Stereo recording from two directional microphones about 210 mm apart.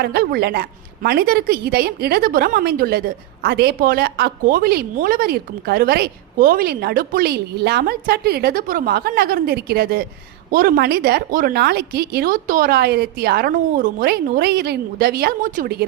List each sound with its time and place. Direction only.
0.0 s a woman's voice: 45° right (ahead or behind)